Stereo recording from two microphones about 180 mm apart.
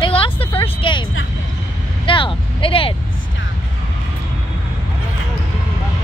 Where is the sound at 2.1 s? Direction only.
30° left (ahead or behind).